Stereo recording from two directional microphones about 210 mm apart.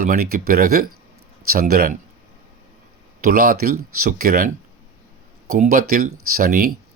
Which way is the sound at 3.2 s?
45° right (ahead or behind).